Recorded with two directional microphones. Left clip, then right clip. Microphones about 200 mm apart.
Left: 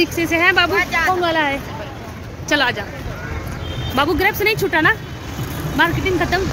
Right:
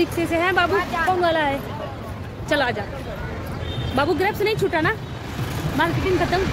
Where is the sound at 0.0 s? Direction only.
5° left (ahead or behind).